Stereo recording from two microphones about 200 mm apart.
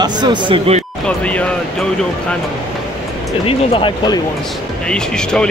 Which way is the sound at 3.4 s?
25° left (ahead or behind).